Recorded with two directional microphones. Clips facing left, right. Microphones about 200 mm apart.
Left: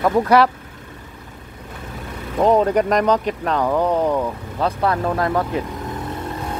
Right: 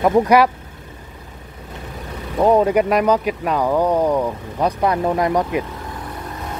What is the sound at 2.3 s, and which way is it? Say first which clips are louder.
Speech: right 1 dB; 10° right (ahead or behind).